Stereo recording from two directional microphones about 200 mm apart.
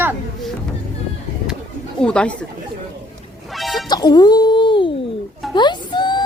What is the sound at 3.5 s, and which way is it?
Music, centre (ahead or behind).